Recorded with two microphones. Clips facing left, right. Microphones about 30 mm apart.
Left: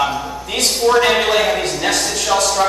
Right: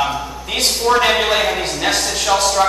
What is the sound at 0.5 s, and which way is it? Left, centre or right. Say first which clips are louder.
A man's voice: left 1 dB; centre.